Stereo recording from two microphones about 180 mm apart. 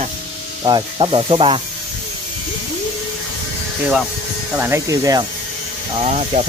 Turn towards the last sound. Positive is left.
turn(degrees=-40)  # may be behind; listen again after turning